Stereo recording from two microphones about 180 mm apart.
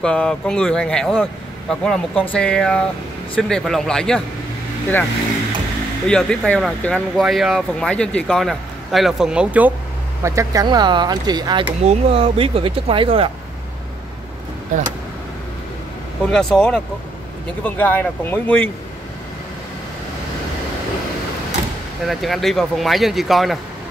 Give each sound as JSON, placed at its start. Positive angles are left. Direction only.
{"t": 0.0, "sound": "speech", "side_deg": 5}
{"t": 6.0, "sound": "speech", "side_deg": 5}
{"t": 11.8, "sound": "speech", "side_deg": -35}
{"t": 16.3, "sound": "speech", "side_deg": 5}
{"t": 22.0, "sound": "speech", "side_deg": 0}